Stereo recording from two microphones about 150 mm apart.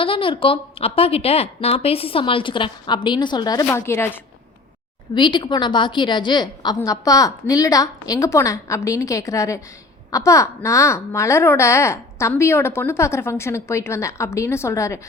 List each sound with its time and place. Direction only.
0.0 s a woman's voice: 35° left (ahead or behind); by 4.2 s 15° left (ahead or behind)
5.1 s a woman's voice: 30° left (ahead or behind)